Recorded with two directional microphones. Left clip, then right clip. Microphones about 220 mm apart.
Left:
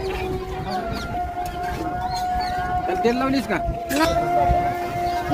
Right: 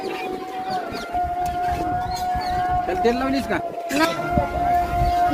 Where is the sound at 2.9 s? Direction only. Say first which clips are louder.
Even; 20° left (ahead or behind).